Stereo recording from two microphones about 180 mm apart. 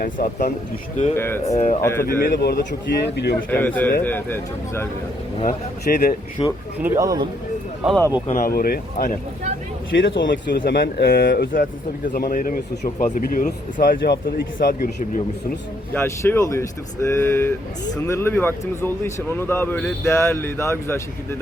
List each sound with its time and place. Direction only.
0.0 s speech: 50° left (ahead or behind)
1.1 s speech: 15° left (ahead or behind)
1.5 s speech: 40° left (ahead or behind)
1.8 s speech: 15° left (ahead or behind)
2.0 s speech: 55° left (ahead or behind)
3.5 s speech: 10° left (ahead or behind)
5.9 s speech: 50° left (ahead or behind)
6.4 s speech: 30° left (ahead or behind)
6.7 s speech: 15° right (ahead or behind)
8.3 s speech: 50° left (ahead or behind)
9.9 s speech: 80° left
10.6 s speech: 60° left (ahead or behind)
15.9 s speech: 15° left (ahead or behind)